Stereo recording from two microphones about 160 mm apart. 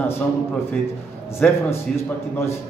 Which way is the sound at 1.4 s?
5° left (ahead or behind).